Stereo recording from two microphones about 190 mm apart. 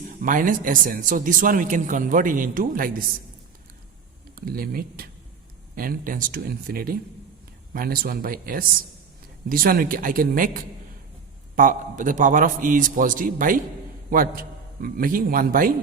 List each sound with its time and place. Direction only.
0.2 s speech: 45° right (ahead or behind)
4.4 s speech: 50° right (ahead or behind)